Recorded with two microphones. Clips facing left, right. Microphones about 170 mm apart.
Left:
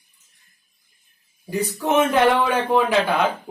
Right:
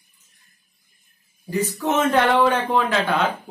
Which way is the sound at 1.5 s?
15° left (ahead or behind).